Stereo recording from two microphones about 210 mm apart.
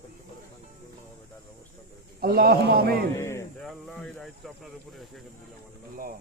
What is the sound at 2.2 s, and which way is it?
Speech, 45° right (ahead or behind).